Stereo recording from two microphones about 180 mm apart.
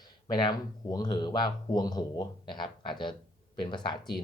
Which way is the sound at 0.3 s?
25° left (ahead or behind).